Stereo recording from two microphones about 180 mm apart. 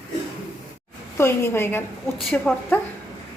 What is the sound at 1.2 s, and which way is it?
A woman's voice, 15° left (ahead or behind).